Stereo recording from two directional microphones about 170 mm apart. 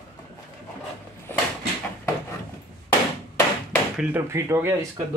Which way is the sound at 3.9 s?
15° right (ahead or behind).